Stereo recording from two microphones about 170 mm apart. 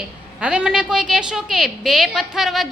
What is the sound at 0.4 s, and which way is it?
A woman's voice, 5° right (ahead or behind).